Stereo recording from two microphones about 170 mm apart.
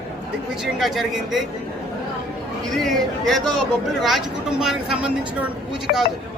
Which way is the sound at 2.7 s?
Centre (ahead or behind).